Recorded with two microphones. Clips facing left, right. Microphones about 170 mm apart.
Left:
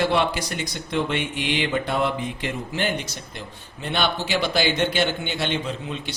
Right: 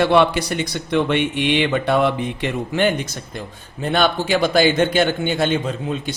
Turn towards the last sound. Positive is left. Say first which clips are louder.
# right 6 dB
turn(degrees=-45)  # may be behind; listen again after turning